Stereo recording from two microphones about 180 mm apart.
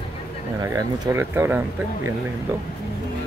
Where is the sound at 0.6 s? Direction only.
15° right (ahead or behind).